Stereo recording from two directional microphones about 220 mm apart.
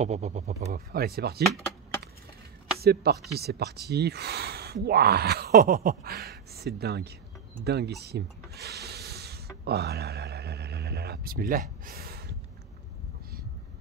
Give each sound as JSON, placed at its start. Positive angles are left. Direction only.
{"t": 0.0, "sound": "speech", "side_deg": -30}
{"t": 0.7, "sound": "speech", "side_deg": -45}
{"t": 1.4, "sound": "speech", "side_deg": 0}
{"t": 2.8, "sound": "speech", "side_deg": -45}
{"t": 8.0, "sound": "a sound", "side_deg": -45}